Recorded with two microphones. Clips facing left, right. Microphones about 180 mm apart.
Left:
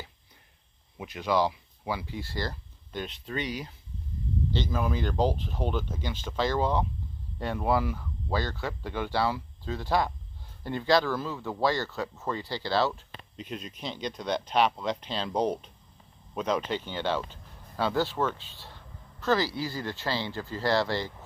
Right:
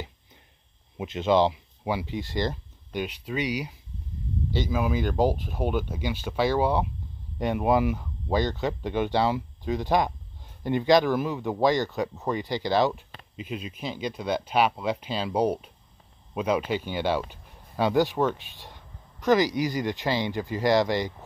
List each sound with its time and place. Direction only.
0.9 s speech: 25° right (ahead or behind)
13.4 s speech: 5° right (ahead or behind)